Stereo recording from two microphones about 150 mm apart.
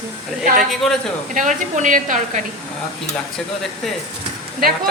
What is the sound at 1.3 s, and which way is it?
A woman's voice, 55° right (ahead or behind).